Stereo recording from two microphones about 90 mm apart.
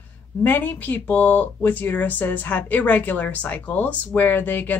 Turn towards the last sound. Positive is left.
turn(degrees=20)  # may be behind; listen again after turning